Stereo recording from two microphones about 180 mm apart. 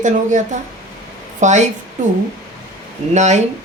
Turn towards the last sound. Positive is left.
turn(degrees=-40)  # may be behind; listen again after turning